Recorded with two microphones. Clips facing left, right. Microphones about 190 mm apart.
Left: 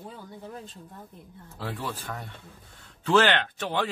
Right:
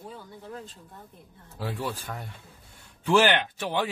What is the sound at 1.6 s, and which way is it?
A man's voice, 10° right (ahead or behind).